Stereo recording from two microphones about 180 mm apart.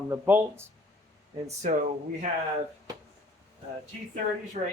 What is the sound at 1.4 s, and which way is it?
Speech, 40° right (ahead or behind).